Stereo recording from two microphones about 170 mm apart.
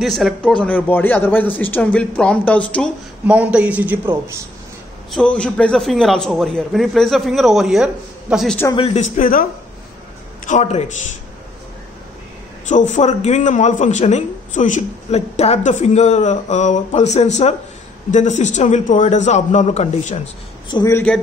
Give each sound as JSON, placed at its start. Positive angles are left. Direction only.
{"t": 0.0, "sound": "a man's voice", "side_deg": 0}
{"t": 3.3, "sound": "a man's voice", "side_deg": -10}
{"t": 5.1, "sound": "a man's voice", "side_deg": 5}
{"t": 8.7, "sound": "a man's voice", "side_deg": 40}
{"t": 12.6, "sound": "a man's voice", "side_deg": 45}
{"t": 20.7, "sound": "a man's voice", "side_deg": 15}